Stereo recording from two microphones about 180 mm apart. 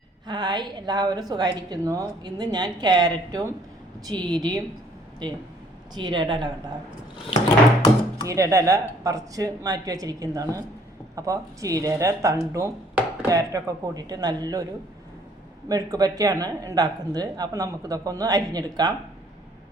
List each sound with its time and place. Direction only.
0.3 s a woman's voice: 25° right (ahead or behind)
5.9 s a woman's voice: 25° right (ahead or behind)
8.3 s a woman's voice: 15° right (ahead or behind)
15.7 s a woman's voice: 20° right (ahead or behind)